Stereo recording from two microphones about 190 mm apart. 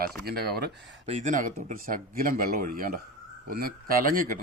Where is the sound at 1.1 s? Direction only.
40° right (ahead or behind).